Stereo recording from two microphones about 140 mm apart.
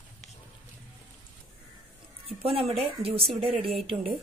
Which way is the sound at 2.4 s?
45° right (ahead or behind).